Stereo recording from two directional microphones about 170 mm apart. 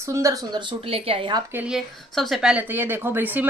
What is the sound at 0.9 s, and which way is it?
Speech, 30° right (ahead or behind).